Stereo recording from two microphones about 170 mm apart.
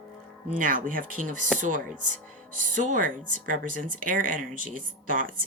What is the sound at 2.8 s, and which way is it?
Speech, 50° right (ahead or behind).